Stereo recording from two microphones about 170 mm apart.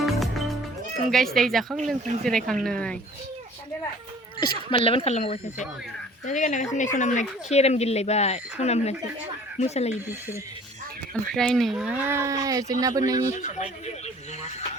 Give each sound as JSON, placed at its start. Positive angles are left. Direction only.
{"t": 0.0, "sound": "music", "side_deg": 0}
{"t": 1.1, "sound": "speech", "side_deg": 0}
{"t": 4.7, "sound": "speech", "side_deg": 35}
{"t": 11.1, "sound": "speech", "side_deg": 5}
{"t": 13.4, "sound": "speech", "side_deg": 45}